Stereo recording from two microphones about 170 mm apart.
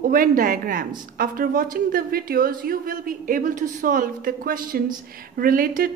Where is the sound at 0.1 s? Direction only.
55° right (ahead or behind).